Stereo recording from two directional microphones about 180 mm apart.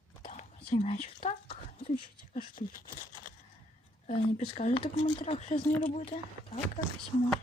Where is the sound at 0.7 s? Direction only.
35° left (ahead or behind).